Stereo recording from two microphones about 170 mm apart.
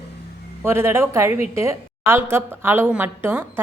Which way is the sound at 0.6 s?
15° right (ahead or behind).